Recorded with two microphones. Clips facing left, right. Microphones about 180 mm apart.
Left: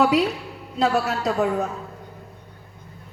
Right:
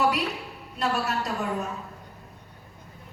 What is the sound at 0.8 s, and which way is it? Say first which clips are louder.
Speech: left 6 dB; 90° left.